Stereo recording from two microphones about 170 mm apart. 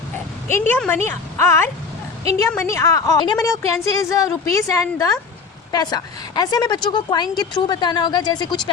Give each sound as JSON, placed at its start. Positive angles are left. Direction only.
{"t": 0.4, "sound": "a woman's voice", "side_deg": 10}